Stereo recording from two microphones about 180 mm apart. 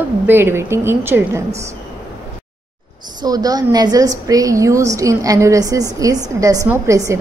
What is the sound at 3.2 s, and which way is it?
A woman's voice, 20° right (ahead or behind).